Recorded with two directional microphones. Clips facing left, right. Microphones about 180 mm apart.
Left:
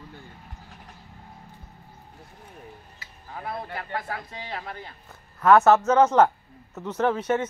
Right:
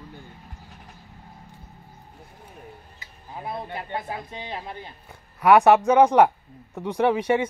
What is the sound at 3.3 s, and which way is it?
Speech, 20° right (ahead or behind).